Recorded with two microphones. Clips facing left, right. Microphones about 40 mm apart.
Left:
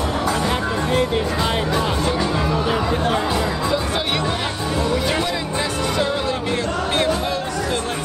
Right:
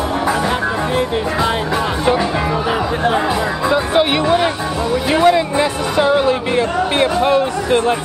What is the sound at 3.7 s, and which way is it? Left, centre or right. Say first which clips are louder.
Music: right 7 dB; right.